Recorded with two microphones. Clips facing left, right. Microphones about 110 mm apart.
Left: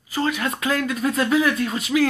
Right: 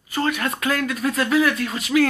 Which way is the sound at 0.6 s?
20° left (ahead or behind).